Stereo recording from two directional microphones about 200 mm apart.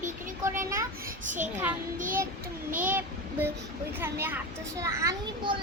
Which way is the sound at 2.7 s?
10° right (ahead or behind).